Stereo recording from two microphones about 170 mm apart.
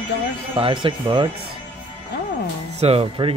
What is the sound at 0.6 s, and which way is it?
Speech, 30° right (ahead or behind).